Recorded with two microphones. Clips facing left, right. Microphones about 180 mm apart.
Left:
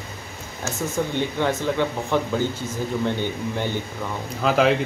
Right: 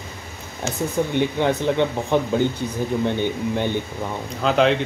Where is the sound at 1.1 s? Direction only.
20° right (ahead or behind).